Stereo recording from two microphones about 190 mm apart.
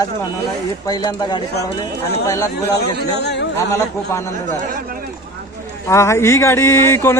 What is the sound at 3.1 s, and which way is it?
Speech, 60° left (ahead or behind).